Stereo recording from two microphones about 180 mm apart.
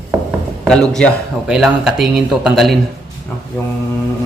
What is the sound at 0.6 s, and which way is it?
Speech, 5° left (ahead or behind).